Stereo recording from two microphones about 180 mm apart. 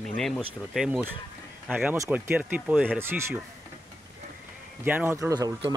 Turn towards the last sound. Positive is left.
turn(degrees=-20)  # may be behind; listen again after turning